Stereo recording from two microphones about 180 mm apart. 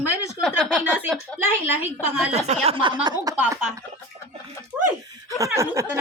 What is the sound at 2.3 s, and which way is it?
Speech, 35° right (ahead or behind).